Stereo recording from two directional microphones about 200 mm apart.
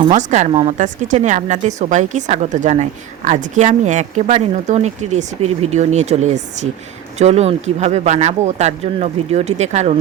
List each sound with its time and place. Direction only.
0.0 s speech: 35° right (ahead or behind)